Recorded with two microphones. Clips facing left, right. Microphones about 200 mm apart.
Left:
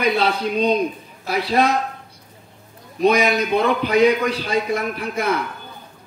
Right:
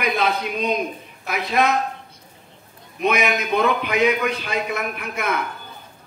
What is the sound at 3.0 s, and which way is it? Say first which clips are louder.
A man's voice: left 4 dB; 35° left (ahead or behind).